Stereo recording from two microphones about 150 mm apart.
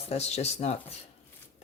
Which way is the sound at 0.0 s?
45° left (ahead or behind).